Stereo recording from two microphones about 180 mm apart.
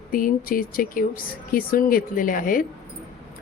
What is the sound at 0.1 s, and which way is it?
Speech, 50° left (ahead or behind).